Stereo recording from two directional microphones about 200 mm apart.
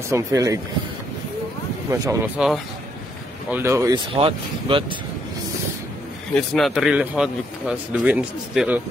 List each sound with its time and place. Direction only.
0.1 s speech: 15° right (ahead or behind)
1.9 s speech: 10° right (ahead or behind)
4.1 s speech: 25° right (ahead or behind)
6.5 s speech: centre (ahead or behind)